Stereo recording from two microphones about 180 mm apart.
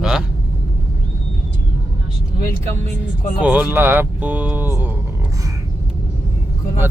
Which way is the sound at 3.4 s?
10° right (ahead or behind).